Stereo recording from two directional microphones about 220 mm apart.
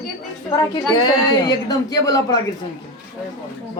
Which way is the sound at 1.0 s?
20° left (ahead or behind).